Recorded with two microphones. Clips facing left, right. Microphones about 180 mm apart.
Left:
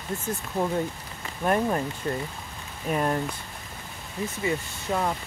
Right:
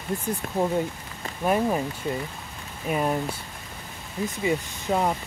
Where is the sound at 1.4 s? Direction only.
10° right (ahead or behind).